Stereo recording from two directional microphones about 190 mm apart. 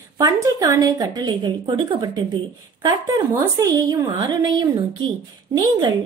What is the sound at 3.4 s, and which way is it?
A woman's voice, 15° right (ahead or behind).